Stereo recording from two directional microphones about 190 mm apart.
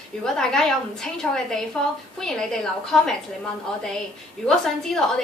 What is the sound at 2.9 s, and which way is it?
Speech, 5° left (ahead or behind).